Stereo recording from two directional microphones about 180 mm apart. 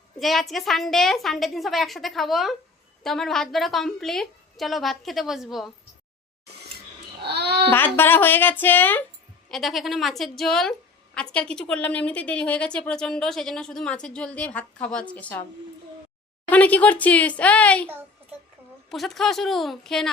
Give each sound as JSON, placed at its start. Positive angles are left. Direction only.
{"t": 0.2, "sound": "a woman's voice", "side_deg": 0}
{"t": 7.3, "sound": "babbling", "side_deg": -65}
{"t": 7.7, "sound": "speech", "side_deg": 10}
{"t": 9.5, "sound": "a woman's voice", "side_deg": 0}
{"t": 16.5, "sound": "speech", "side_deg": 10}
{"t": 18.9, "sound": "a woman's voice", "side_deg": 0}